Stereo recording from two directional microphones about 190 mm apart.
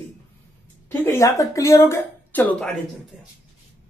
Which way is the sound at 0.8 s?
15° left (ahead or behind).